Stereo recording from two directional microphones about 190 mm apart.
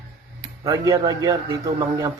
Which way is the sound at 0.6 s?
15° right (ahead or behind).